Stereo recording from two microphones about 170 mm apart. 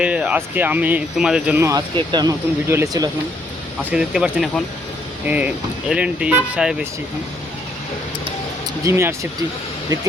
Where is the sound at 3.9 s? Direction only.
5° right (ahead or behind).